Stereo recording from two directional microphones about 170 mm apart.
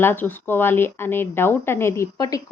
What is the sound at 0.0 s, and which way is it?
A woman's voice, 10° left (ahead or behind).